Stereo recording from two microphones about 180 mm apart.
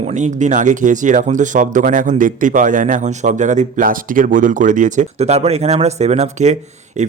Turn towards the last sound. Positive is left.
turn(degrees=-40)  # may be behind; listen again after turning